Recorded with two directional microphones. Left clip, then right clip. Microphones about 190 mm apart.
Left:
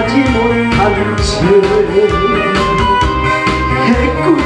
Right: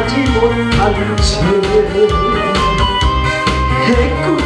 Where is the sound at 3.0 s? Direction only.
50° right (ahead or behind).